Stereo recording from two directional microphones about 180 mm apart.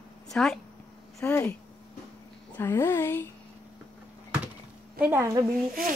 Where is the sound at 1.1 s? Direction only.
15° left (ahead or behind).